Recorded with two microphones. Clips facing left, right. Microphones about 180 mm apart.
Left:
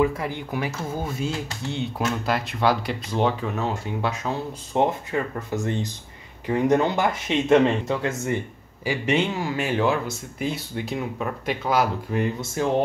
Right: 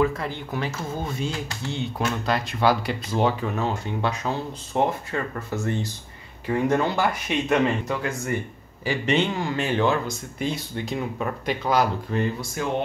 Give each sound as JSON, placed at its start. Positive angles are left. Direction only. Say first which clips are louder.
{"t": 0.0, "sound": "speech", "louder": "left 1 dB", "side_deg": 15}
{"t": 4.7, "sound": "speech", "louder": "left 2 dB", "side_deg": 20}
{"t": 8.8, "sound": "speech", "louder": "even", "side_deg": 10}
{"t": 12.5, "sound": "speech", "louder": "left 5 dB", "side_deg": 35}